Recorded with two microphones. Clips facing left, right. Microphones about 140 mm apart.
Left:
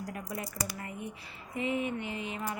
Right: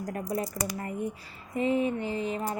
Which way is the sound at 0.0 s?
40° right (ahead or behind).